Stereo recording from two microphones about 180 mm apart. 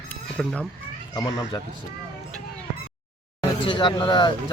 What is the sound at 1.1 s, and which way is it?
Speech, 20° left (ahead or behind).